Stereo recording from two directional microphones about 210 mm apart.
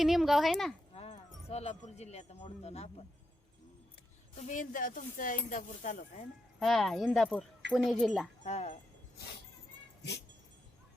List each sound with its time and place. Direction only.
0.0 s speech: centre (ahead or behind)
0.9 s speech: 30° left (ahead or behind)
4.4 s speech: 35° left (ahead or behind)
6.6 s speech: centre (ahead or behind)
8.4 s speech: 30° left (ahead or behind)